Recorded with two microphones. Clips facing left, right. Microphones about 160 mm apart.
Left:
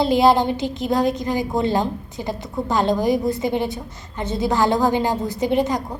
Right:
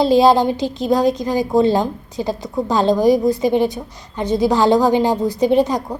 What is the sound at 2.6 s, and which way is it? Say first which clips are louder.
A woman's voice: right 5 dB; 20° right (ahead or behind).